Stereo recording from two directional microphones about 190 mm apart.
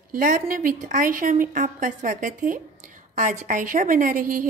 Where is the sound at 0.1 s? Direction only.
45° right (ahead or behind).